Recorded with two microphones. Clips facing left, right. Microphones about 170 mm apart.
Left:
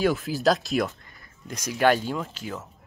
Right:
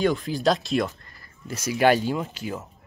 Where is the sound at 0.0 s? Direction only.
5° left (ahead or behind).